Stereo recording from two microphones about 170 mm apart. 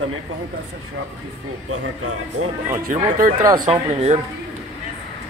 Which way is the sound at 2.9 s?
45° right (ahead or behind).